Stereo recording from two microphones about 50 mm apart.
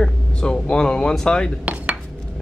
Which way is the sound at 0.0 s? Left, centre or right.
Centre.